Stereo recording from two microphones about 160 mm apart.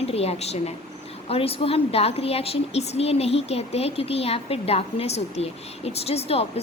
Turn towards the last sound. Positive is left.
turn(degrees=40)  # may be behind; listen again after turning